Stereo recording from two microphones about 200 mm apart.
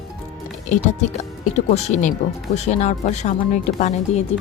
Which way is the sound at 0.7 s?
35° left (ahead or behind).